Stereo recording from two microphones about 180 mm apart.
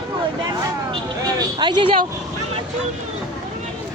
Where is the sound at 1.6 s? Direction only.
25° right (ahead or behind).